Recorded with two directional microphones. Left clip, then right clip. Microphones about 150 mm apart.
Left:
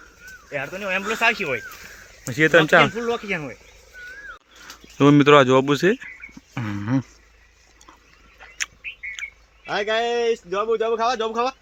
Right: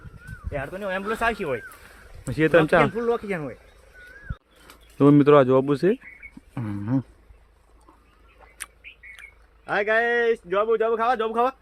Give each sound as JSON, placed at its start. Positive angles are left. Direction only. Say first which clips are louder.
{"t": 0.5, "sound": "speech", "louder": "left 3 dB", "side_deg": 35}
{"t": 1.0, "sound": "speech", "louder": "left 5 dB", "side_deg": 0}
{"t": 4.9, "sound": "speech", "louder": "left 2 dB", "side_deg": -5}
{"t": 6.5, "sound": "a sound", "louder": "left 3 dB", "side_deg": 0}
{"t": 8.4, "sound": "bird", "louder": "left 12 dB", "side_deg": -10}
{"t": 9.6, "sound": "speech", "louder": "right 1 dB", "side_deg": -5}
{"t": 11.0, "sound": "speech", "louder": "left 1 dB", "side_deg": -55}